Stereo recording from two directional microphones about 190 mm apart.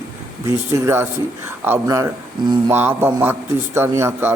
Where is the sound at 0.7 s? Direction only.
15° right (ahead or behind).